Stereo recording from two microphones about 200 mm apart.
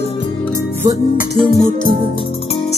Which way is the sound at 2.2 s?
30° left (ahead or behind).